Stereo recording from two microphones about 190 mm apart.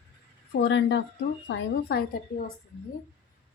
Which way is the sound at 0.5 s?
70° left (ahead or behind).